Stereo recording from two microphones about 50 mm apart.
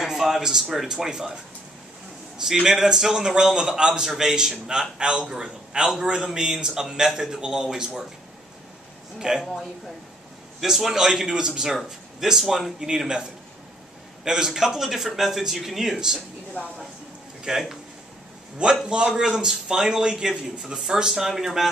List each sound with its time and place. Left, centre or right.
0.0 s a man's voice: centre
2.3 s a man's voice: centre
9.2 s a man's voice: centre
10.6 s a man's voice: centre
17.5 s a man's voice: centre
18.9 s a man's voice: centre